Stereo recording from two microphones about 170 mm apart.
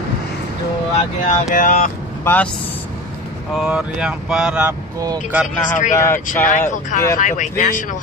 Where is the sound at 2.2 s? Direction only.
10° left (ahead or behind).